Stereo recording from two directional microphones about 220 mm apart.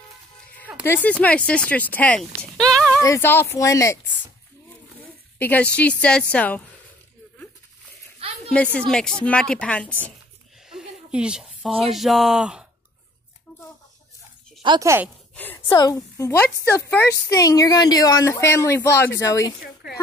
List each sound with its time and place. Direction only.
0.8 s speech: 10° left (ahead or behind)
5.4 s speech: 5° left (ahead or behind)
8.2 s a sound: 25° right (ahead or behind)
8.7 s speech: 5° left (ahead or behind)
14.6 s speech: 15° right (ahead or behind)
15.3 s a woman's voice: 10° left (ahead or behind)
19.6 s a sound: 45° left (ahead or behind)